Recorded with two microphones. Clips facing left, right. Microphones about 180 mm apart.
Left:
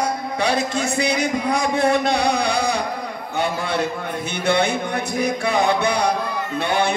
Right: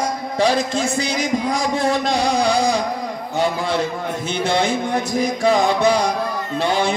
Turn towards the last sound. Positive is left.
turn(degrees=60)  # may be behind; listen again after turning